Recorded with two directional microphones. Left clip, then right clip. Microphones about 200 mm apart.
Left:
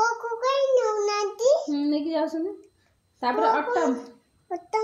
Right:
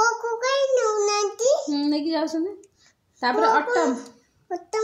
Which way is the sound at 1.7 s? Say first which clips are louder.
Right 2 dB; 35° right (ahead or behind).